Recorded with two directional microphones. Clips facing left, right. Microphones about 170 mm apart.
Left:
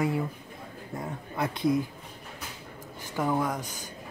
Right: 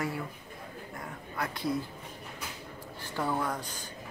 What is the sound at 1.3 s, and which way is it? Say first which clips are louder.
Speech: left 6 dB; 20° left (ahead or behind).